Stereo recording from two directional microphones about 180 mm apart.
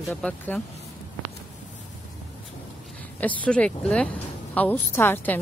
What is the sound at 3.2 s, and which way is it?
A woman's voice, 10° left (ahead or behind).